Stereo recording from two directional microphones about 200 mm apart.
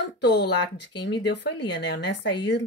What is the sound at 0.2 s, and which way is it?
Speech, 60° left (ahead or behind).